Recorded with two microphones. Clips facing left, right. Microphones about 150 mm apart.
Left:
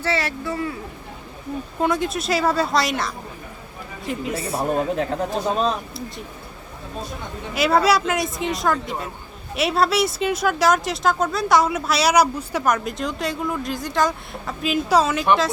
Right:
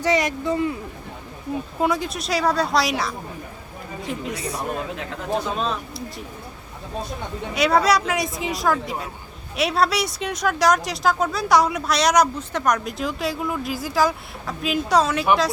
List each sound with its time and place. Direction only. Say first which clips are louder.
0.0 s speech: right 3 dB; 15° right (ahead or behind)
1.8 s speech: left 2 dB; centre (ahead or behind)
4.4 s speech: left 5 dB; 30° left (ahead or behind)
7.5 s speech: left 1 dB; centre (ahead or behind)